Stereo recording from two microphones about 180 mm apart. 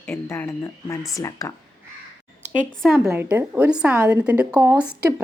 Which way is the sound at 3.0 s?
10° right (ahead or behind).